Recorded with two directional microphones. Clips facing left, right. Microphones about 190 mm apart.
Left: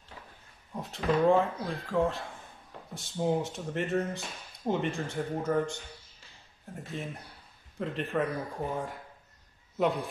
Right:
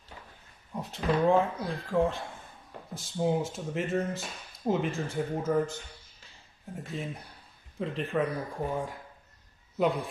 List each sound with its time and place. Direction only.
0.7 s speech: centre (ahead or behind)
9.8 s speech: centre (ahead or behind)